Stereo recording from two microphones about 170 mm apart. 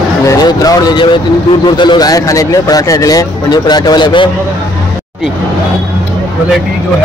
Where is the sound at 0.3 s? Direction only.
20° left (ahead or behind).